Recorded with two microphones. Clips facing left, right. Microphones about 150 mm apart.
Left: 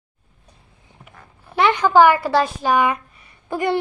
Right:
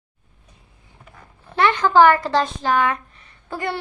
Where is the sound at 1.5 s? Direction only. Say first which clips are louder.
Left 1 dB; 15° left (ahead or behind).